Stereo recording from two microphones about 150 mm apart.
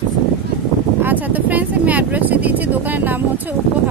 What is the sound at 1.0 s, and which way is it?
Speech, 10° right (ahead or behind).